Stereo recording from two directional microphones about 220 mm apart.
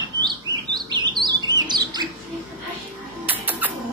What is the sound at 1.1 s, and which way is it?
Bird, 20° right (ahead or behind).